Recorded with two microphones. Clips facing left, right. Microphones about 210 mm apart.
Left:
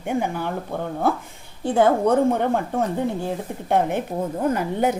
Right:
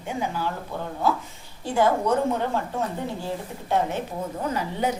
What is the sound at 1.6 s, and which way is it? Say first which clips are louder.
A woman's voice: left 4 dB; 55° left (ahead or behind).